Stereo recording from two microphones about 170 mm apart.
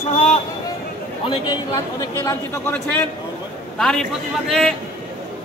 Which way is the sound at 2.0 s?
15° left (ahead or behind).